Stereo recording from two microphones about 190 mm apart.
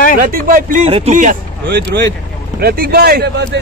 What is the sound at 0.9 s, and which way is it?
Speech, 35° right (ahead or behind).